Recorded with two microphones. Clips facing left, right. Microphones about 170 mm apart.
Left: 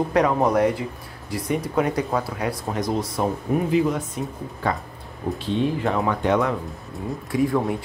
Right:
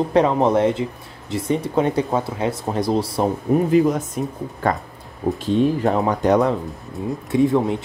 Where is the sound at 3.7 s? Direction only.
45° right (ahead or behind).